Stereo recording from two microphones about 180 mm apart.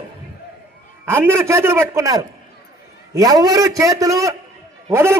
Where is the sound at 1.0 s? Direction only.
15° right (ahead or behind).